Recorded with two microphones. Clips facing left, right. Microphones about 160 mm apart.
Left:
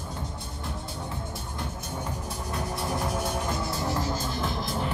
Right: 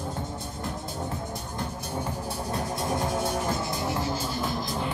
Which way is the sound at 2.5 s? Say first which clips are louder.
Right 1 dB; 25° right (ahead or behind).